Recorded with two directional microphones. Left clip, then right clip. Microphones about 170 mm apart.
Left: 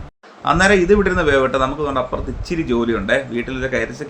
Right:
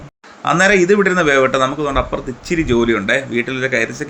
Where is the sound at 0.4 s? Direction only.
5° right (ahead or behind).